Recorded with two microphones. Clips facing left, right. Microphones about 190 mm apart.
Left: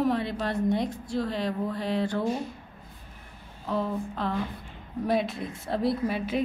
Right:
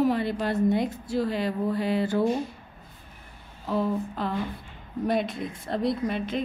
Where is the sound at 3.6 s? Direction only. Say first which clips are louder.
Right 3 dB; centre (ahead or behind).